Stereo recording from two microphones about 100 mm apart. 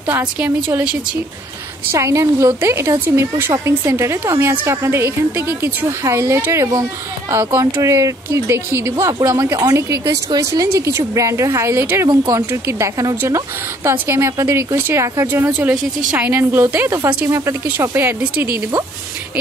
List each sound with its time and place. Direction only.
0.0 s a woman's voice: 15° right (ahead or behind)
1.9 s a woman's voice: 30° right (ahead or behind)
15.7 s a woman's voice: 10° right (ahead or behind)
16.3 s a woman's voice: 25° right (ahead or behind)